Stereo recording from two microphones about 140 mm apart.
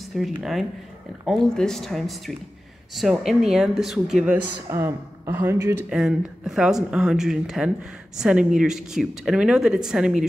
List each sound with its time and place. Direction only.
0.4 s speech: centre (ahead or behind)
4.6 s speech: 15° right (ahead or behind)
5.9 s speech: 5° right (ahead or behind)